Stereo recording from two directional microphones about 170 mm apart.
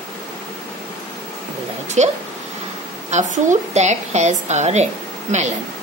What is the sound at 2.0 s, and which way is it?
A woman's voice, 40° right (ahead or behind).